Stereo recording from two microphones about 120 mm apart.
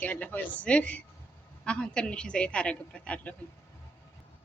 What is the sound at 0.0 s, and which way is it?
A woman's voice, 15° left (ahead or behind).